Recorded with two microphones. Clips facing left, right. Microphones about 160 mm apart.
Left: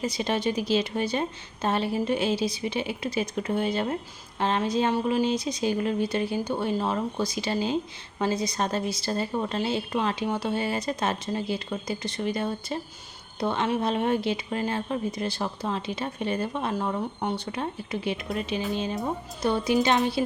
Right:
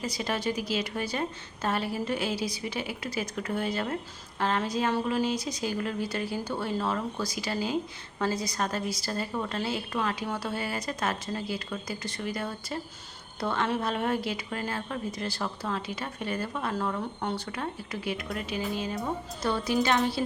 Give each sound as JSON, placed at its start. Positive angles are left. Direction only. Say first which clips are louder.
{"t": 0.0, "sound": "a woman's voice", "louder": "left 4 dB", "side_deg": 25}